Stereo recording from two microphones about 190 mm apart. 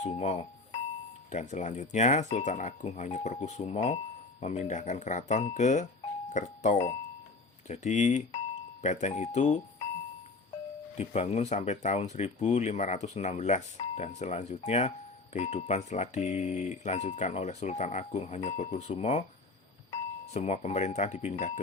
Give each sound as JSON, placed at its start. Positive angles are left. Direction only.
{"t": 0.0, "sound": "speech", "side_deg": 35}
{"t": 10.9, "sound": "speech", "side_deg": 35}